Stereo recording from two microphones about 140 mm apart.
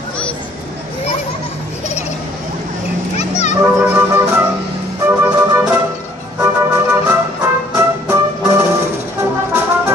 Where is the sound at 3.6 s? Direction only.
10° right (ahead or behind).